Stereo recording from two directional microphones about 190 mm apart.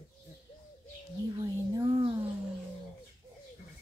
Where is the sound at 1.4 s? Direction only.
25° right (ahead or behind).